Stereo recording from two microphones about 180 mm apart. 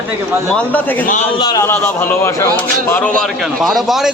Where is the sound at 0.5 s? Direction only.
10° left (ahead or behind).